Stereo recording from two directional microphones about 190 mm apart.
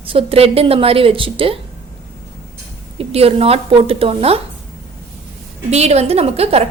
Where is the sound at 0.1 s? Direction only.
30° right (ahead or behind).